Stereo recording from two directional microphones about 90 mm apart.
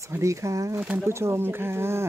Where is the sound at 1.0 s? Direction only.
30° right (ahead or behind).